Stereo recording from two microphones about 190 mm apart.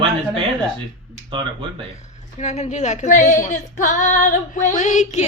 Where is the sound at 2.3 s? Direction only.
35° left (ahead or behind).